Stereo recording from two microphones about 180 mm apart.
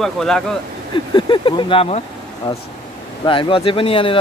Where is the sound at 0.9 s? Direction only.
25° left (ahead or behind).